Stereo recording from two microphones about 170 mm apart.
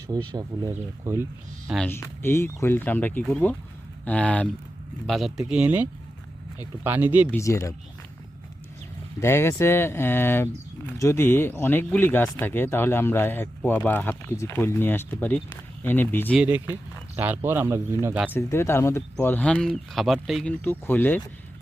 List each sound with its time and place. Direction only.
0.3 s speech: 20° right (ahead or behind)
1.6 s speech: centre (ahead or behind)
1.9 s speech: 15° left (ahead or behind); by 7.3 s 10° right (ahead or behind)
7.3 s speech: 15° left (ahead or behind)
9.2 s speech: 15° left (ahead or behind)
16.3 s speech: 10° right (ahead or behind)
18.3 s speech: 15° left (ahead or behind)